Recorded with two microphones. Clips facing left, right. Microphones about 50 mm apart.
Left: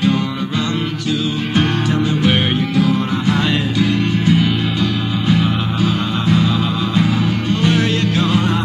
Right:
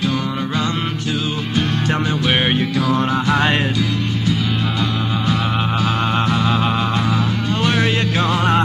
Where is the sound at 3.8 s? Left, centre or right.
Left.